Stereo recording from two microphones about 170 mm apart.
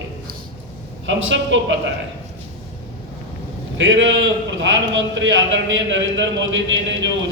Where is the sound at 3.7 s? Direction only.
90° right.